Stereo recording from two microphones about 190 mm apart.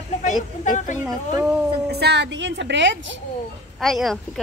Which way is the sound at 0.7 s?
40° left (ahead or behind).